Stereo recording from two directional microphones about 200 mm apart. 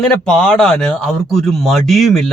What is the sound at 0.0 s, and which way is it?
Speech, 5° left (ahead or behind).